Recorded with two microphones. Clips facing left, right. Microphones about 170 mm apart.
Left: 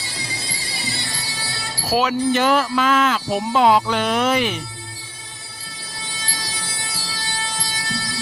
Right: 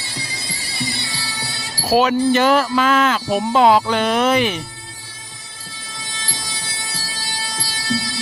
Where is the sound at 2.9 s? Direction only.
60° right (ahead or behind).